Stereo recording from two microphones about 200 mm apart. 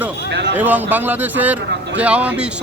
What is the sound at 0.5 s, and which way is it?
A man's voice, 10° right (ahead or behind).